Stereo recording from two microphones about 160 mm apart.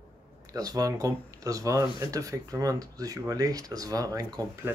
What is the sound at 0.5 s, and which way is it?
Speech, 20° right (ahead or behind).